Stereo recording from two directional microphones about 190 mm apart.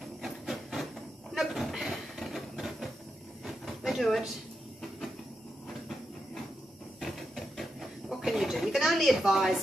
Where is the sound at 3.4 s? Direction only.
Centre (ahead or behind).